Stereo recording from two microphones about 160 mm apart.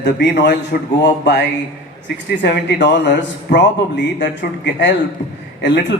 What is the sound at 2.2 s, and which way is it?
A man's voice, 90° left.